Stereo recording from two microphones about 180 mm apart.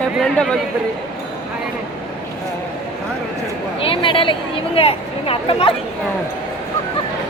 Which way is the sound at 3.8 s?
30° left (ahead or behind).